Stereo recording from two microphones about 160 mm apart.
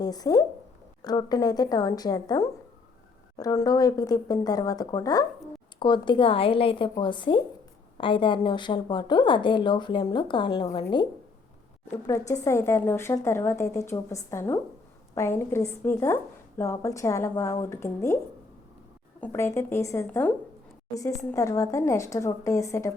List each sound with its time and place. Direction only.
0.0 s a woman's voice: 25° left (ahead or behind)
19.2 s a woman's voice: 15° left (ahead or behind)